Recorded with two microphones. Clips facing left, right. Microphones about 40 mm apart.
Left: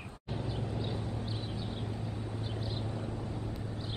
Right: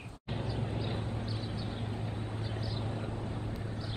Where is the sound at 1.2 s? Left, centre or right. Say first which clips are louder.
Even; left.